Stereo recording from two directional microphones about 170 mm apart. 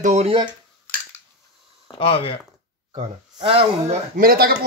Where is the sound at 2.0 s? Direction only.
35° left (ahead or behind).